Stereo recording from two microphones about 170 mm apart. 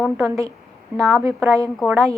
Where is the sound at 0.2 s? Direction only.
20° right (ahead or behind).